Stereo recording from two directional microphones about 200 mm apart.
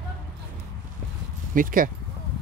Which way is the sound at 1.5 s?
45° right (ahead or behind).